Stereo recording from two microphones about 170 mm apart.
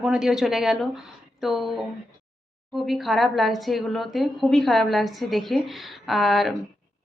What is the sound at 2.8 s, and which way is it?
A woman's voice, centre (ahead or behind).